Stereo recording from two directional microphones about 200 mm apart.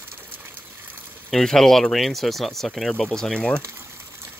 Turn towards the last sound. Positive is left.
turn(degrees=5)  # may be behind; listen again after turning